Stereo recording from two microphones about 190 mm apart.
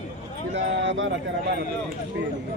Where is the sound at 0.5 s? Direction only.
70° right (ahead or behind).